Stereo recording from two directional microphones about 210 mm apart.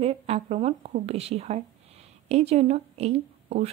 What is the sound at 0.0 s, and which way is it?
A woman's voice, 30° right (ahead or behind).